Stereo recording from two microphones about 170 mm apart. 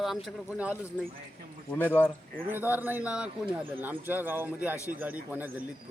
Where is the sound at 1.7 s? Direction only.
10° left (ahead or behind).